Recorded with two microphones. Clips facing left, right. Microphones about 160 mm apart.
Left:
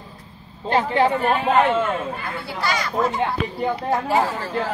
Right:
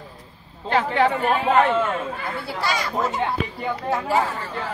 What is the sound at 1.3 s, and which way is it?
Speech, 10° left (ahead or behind).